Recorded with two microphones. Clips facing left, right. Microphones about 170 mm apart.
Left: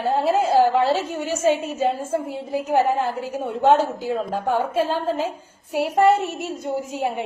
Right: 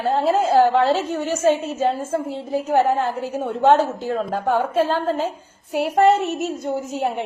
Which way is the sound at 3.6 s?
5° left (ahead or behind).